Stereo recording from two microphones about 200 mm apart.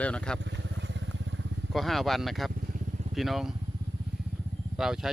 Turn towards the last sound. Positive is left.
turn(degrees=0)  # may be behind; listen again after turning